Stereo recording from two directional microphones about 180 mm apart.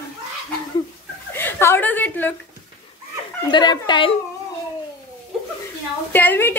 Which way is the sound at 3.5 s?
25° left (ahead or behind).